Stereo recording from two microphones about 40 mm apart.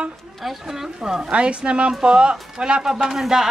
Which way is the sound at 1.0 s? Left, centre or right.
Centre.